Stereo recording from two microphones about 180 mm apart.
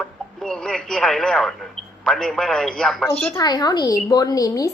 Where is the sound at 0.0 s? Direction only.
5° left (ahead or behind).